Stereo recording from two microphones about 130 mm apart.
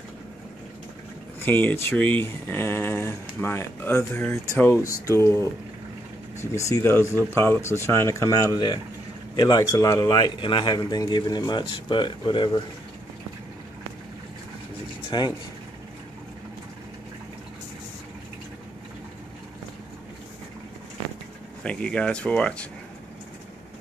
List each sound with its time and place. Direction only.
1.4 s speech: 15° left (ahead or behind)
6.5 s a man's voice: 25° left (ahead or behind)
15.0 s vehicle: 40° left (ahead or behind)
21.6 s speech: 10° left (ahead or behind)